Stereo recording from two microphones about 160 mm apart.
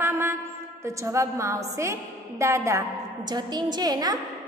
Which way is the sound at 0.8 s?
20° right (ahead or behind).